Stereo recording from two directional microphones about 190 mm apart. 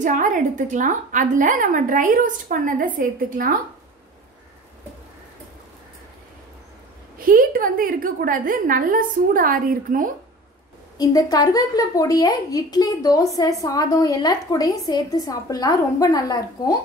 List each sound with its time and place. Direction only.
0.0 s a woman's voice: 40° right (ahead or behind)
7.2 s a woman's voice: 50° right (ahead or behind)
11.0 s speech: 20° left (ahead or behind)